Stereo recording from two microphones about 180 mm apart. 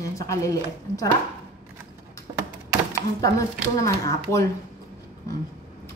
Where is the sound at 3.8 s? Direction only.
20° left (ahead or behind).